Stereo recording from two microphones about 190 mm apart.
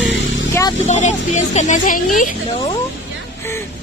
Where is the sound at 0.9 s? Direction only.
40° left (ahead or behind).